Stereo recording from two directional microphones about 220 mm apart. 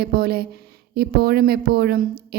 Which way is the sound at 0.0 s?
45° right (ahead or behind).